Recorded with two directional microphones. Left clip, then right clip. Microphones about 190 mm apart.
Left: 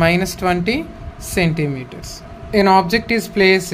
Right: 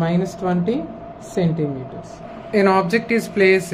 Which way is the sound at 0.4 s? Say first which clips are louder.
Left 6 dB; 60° left (ahead or behind).